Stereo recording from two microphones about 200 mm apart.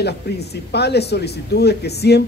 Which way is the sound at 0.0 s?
55° left (ahead or behind).